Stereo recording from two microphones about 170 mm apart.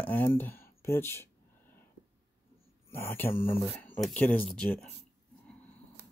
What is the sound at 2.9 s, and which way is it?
Speech, 15° left (ahead or behind).